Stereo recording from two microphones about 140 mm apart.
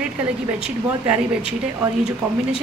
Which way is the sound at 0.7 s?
10° right (ahead or behind).